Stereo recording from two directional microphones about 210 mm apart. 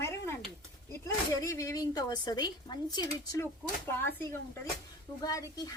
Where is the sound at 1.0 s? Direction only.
15° left (ahead or behind).